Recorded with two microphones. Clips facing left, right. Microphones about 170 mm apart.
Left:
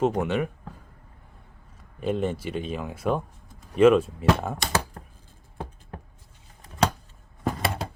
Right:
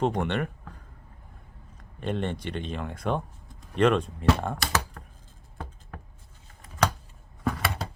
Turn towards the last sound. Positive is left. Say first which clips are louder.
# left 1 dB
turn(degrees=25)  # may be behind; listen again after turning